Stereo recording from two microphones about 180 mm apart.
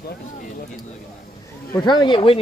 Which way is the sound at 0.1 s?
50° left (ahead or behind).